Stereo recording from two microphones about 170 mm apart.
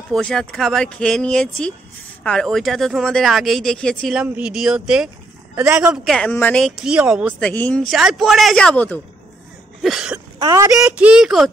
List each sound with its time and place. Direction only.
0.1 s a man's voice: 5° left (ahead or behind)
6.3 s speech: 10° left (ahead or behind)
6.6 s speech: 5° right (ahead or behind)
7.3 s speech: 5° left (ahead or behind)
9.8 s speech: centre (ahead or behind)
10.4 s speech: 20° right (ahead or behind)
10.8 s speech: 5° right (ahead or behind)